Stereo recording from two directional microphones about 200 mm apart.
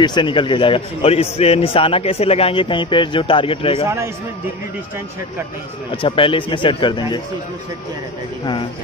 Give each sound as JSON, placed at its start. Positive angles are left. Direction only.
{"t": 0.0, "sound": "a man's voice", "side_deg": 20}
{"t": 3.8, "sound": "a man's voice", "side_deg": -15}
{"t": 5.9, "sound": "a man's voice", "side_deg": 25}